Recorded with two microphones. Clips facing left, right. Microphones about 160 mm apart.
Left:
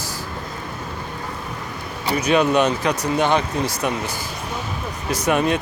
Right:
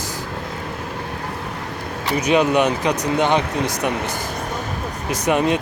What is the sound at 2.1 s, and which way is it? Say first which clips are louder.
Speech: right 1 dB; 15° right (ahead or behind).